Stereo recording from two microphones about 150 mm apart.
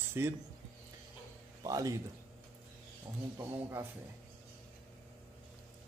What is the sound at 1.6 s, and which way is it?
Speech, 25° right (ahead or behind).